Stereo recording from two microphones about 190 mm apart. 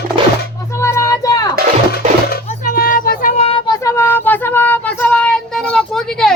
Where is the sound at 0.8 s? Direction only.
15° left (ahead or behind).